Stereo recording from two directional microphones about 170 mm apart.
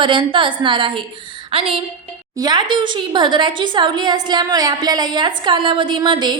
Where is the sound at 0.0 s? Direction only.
30° right (ahead or behind).